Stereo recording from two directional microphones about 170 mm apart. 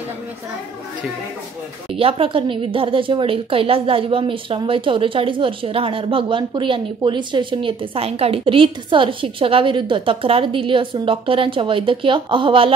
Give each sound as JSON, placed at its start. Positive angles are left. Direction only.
{"t": 2.0, "sound": "a woman's voice", "side_deg": -35}